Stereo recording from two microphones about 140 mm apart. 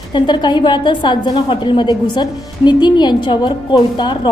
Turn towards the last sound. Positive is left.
turn(degrees=35)  # may be behind; listen again after turning